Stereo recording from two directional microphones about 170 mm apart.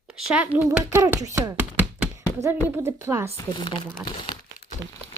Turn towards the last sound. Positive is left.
turn(degrees=-20)  # may be behind; listen again after turning